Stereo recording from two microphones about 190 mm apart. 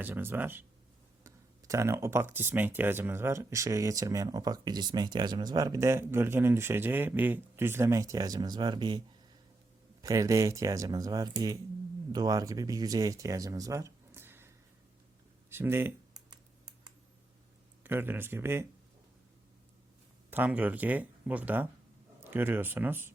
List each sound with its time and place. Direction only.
0.0 s speech: 10° right (ahead or behind)
15.4 s computer keyboard: 10° right (ahead or behind)
17.8 s speech: 10° right (ahead or behind)
20.3 s speech: 10° right (ahead or behind)